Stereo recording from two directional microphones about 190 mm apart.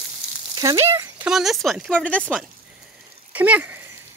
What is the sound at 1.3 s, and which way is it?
Speech, centre (ahead or behind).